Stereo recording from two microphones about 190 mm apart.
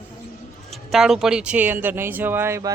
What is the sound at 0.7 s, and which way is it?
Speech, centre (ahead or behind).